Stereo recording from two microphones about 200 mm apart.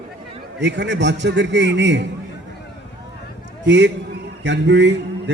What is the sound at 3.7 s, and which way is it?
A man's voice, 60° right (ahead or behind).